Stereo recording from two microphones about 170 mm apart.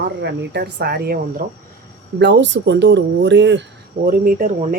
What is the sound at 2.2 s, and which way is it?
Speech, 90° right.